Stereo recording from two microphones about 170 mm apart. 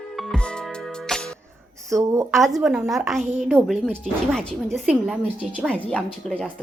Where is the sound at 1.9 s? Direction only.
20° right (ahead or behind).